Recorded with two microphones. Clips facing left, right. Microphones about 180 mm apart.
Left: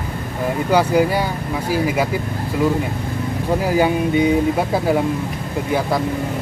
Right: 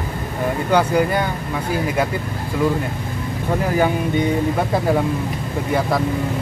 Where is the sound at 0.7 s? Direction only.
5° left (ahead or behind).